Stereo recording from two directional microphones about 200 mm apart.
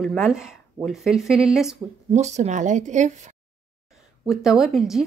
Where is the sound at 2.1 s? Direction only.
35° right (ahead or behind).